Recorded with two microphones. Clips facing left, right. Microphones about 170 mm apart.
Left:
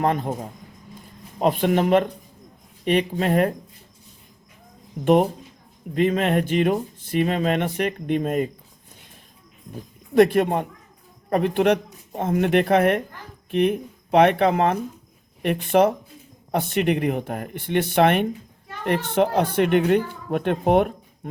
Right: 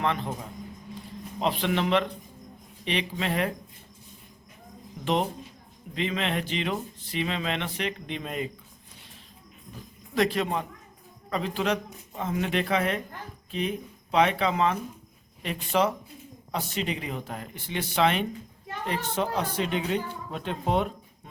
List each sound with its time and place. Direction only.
0.0 s speech: 45° left (ahead or behind)
5.0 s speech: 50° left (ahead or behind)
9.7 s speech: 55° left (ahead or behind)